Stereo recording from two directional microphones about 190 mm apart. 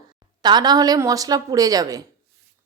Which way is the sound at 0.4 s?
20° right (ahead or behind).